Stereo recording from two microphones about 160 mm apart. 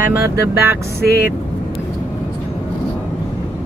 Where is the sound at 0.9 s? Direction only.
80° left.